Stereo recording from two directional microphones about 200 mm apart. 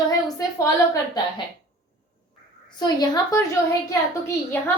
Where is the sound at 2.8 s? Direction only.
20° left (ahead or behind).